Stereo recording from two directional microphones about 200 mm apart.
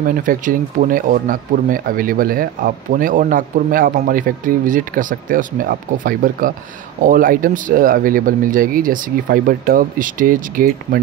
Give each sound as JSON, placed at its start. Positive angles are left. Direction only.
{"t": 0.0, "sound": "speech", "side_deg": -45}